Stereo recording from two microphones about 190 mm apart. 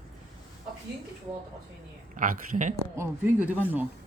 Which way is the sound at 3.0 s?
10° right (ahead or behind).